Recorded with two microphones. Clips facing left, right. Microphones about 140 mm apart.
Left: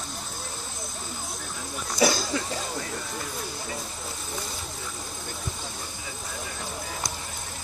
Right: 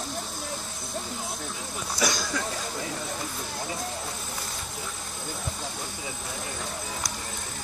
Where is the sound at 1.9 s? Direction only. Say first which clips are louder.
Left 5 dB; 25° left (ahead or behind).